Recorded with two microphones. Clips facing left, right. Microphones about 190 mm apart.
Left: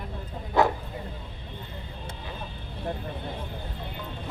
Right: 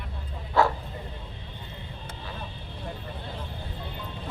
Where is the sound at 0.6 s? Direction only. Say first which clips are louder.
Even; 15° left (ahead or behind).